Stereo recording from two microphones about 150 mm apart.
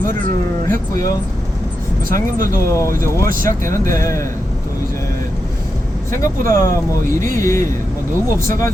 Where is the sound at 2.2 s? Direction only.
20° left (ahead or behind).